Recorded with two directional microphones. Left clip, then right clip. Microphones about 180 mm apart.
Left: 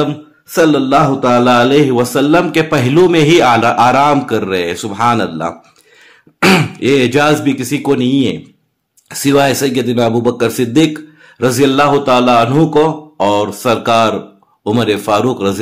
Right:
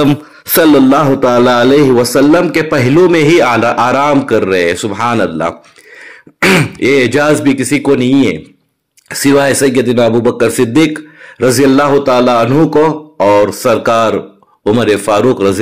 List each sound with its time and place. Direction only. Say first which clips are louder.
0.0 s speech: right 5 dB; 50° right (ahead or behind); by 1.7 s 30° right (ahead or behind)
2.1 s a man's voice: right 3 dB; 15° right (ahead or behind)
13.7 s a man's voice: right 2 dB; 10° right (ahead or behind)